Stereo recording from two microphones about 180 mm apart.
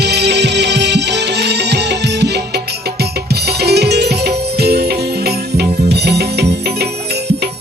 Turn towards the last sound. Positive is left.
turn(degrees=-65)  # may be behind; listen again after turning